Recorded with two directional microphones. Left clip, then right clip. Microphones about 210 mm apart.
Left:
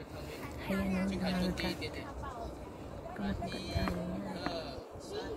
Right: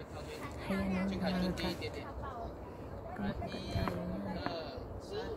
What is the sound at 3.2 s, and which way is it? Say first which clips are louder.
Speech: left 2 dB; 45° right (ahead or behind).